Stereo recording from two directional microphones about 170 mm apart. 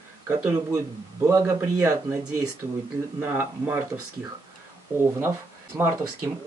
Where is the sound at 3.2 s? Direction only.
15° right (ahead or behind).